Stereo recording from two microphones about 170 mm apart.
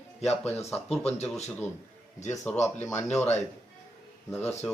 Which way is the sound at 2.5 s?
10° left (ahead or behind).